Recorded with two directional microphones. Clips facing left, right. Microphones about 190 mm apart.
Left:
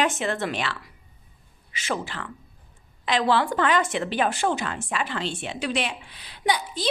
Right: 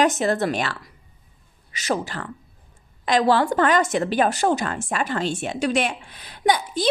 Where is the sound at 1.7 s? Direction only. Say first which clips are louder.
Right 4 dB; 40° right (ahead or behind).